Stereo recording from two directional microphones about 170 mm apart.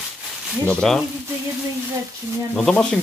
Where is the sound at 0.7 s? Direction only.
5° left (ahead or behind).